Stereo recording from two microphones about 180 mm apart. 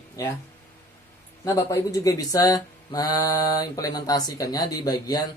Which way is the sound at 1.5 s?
15° left (ahead or behind).